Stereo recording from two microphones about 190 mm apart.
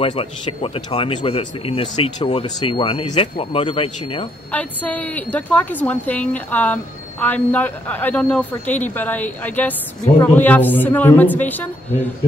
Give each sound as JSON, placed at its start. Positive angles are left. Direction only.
{"t": 0.0, "sound": "speech", "side_deg": 30}
{"t": 4.5, "sound": "a woman's voice", "side_deg": 10}